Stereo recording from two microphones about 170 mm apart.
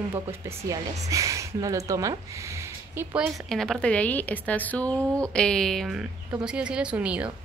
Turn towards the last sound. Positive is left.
turn(degrees=-5)  # may be behind; listen again after turning